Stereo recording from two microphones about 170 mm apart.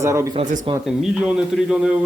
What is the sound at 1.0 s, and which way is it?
Speech, 5° right (ahead or behind).